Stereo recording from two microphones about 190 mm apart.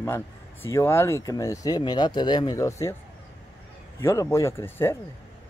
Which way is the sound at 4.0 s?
15° left (ahead or behind).